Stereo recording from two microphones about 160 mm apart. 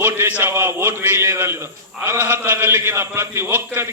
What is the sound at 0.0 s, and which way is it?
A man's voice, 15° right (ahead or behind).